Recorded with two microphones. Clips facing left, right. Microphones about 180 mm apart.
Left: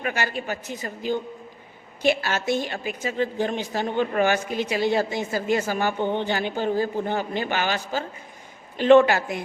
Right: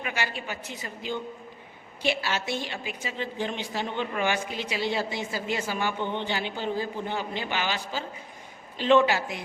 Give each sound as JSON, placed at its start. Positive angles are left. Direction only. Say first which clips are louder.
{"t": 0.0, "sound": "a woman's voice", "louder": "left 5 dB", "side_deg": 45}